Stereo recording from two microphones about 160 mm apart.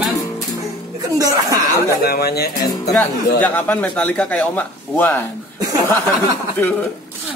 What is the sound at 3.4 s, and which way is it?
Speech, 10° left (ahead or behind).